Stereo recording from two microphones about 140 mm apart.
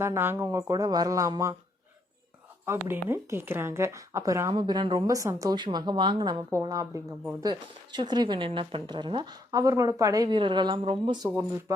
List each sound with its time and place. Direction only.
0.0 s speech: 15° right (ahead or behind)
2.8 s speech: 15° right (ahead or behind); by 11.3 s 35° right (ahead or behind)